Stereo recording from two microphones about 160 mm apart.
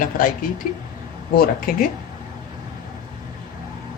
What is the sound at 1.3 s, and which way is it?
Speech, 70° left (ahead or behind).